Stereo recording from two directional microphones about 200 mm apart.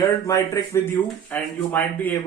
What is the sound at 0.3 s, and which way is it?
A man's voice, 15° left (ahead or behind).